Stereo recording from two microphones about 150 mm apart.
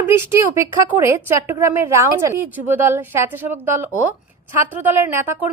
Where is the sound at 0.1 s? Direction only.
20° right (ahead or behind).